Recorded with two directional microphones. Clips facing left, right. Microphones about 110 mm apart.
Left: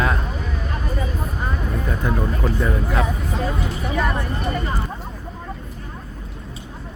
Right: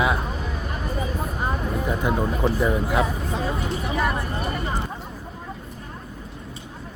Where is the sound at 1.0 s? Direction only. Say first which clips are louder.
Even; 25° right (ahead or behind).